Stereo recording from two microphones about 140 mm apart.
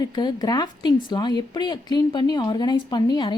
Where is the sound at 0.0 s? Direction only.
30° left (ahead or behind).